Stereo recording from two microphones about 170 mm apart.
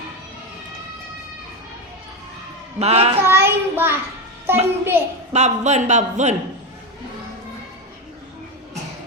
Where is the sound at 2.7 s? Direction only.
35° right (ahead or behind).